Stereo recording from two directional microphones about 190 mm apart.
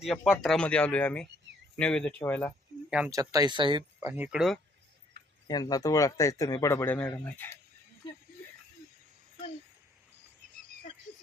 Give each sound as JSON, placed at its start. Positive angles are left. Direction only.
{"t": 0.0, "sound": "speech", "side_deg": 0}
{"t": 3.1, "sound": "speech", "side_deg": -20}
{"t": 4.0, "sound": "speech", "side_deg": -5}
{"t": 5.5, "sound": "speech", "side_deg": 20}